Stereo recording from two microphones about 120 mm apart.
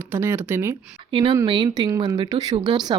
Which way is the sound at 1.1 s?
40° right (ahead or behind).